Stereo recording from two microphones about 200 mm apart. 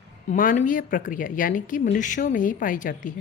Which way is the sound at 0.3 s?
40° left (ahead or behind).